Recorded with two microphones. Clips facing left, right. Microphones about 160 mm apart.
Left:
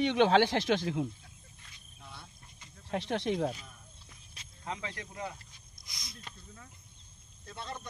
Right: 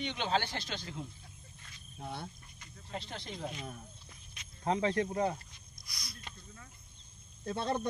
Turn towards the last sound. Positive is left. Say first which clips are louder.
# right 9 dB
turn(degrees=-55)  # may be behind; listen again after turning